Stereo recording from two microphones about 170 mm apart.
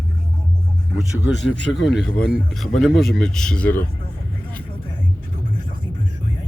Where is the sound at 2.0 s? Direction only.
5° left (ahead or behind).